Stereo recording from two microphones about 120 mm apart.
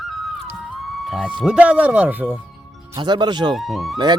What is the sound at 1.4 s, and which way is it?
Speech, 10° right (ahead or behind).